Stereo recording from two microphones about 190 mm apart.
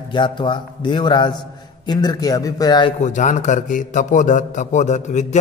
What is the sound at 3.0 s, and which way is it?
A man's voice, 40° left (ahead or behind).